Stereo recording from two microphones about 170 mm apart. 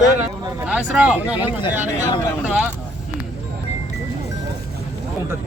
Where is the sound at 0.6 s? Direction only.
10° right (ahead or behind).